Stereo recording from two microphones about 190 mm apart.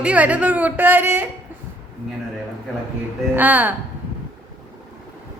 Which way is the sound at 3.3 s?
10° right (ahead or behind).